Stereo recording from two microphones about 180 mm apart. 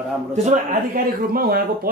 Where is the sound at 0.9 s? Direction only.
55° right (ahead or behind).